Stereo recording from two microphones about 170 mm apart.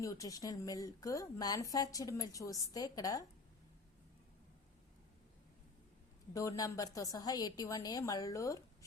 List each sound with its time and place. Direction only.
0.0 s a woman's voice: 20° left (ahead or behind)
6.3 s a woman's voice: 20° left (ahead or behind)